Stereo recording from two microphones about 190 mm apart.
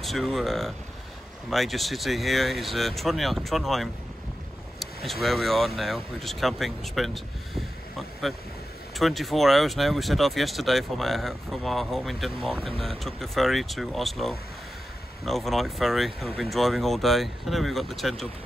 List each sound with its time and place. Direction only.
0.0 s speech: centre (ahead or behind)
8.9 s speech: centre (ahead or behind)
12.6 s speech: 30° right (ahead or behind)
13.0 s speech: centre (ahead or behind)